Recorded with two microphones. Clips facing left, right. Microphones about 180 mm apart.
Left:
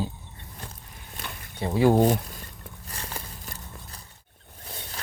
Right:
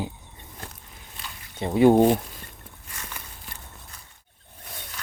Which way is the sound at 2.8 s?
35° left (ahead or behind).